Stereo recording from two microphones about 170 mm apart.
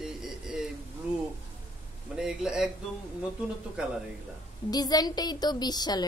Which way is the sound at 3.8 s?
5° right (ahead or behind).